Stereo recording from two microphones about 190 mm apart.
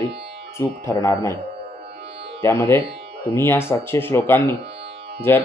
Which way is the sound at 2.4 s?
15° left (ahead or behind).